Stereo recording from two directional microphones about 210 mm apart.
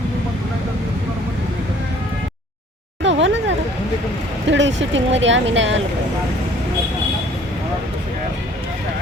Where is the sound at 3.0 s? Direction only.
60° right (ahead or behind).